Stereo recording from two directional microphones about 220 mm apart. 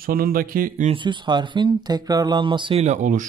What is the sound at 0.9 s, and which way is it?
Speech, 20° right (ahead or behind).